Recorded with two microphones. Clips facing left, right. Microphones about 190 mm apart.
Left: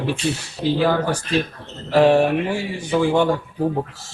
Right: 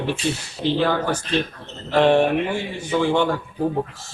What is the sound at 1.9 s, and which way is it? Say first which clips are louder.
Speech: left 2 dB; 5° left (ahead or behind).